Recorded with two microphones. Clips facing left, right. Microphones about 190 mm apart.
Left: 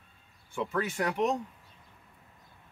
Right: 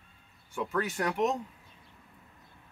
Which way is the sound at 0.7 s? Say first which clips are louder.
Even; 5° right (ahead or behind).